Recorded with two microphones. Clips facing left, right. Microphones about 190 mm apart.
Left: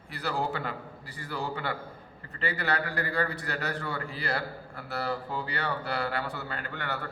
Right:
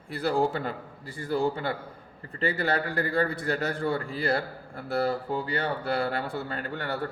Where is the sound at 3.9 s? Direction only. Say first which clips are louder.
Right 7 dB; 50° right (ahead or behind).